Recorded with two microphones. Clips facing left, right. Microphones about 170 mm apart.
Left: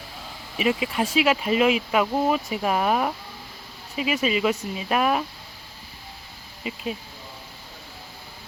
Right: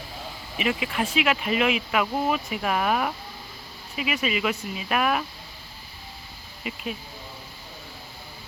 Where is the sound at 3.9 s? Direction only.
35° left (ahead or behind).